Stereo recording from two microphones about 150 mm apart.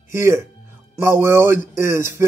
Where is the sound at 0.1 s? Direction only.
15° right (ahead or behind).